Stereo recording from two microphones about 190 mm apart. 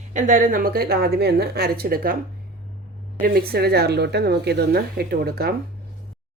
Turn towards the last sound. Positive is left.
turn(degrees=-55)  # may be behind; listen again after turning